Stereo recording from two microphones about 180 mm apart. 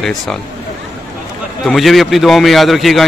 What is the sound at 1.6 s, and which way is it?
Speech, centre (ahead or behind).